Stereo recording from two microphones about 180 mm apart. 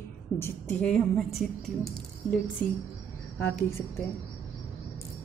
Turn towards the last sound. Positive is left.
turn(degrees=15)  # may be behind; listen again after turning